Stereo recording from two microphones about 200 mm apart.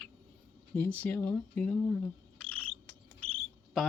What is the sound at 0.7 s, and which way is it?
Speech, 10° left (ahead or behind).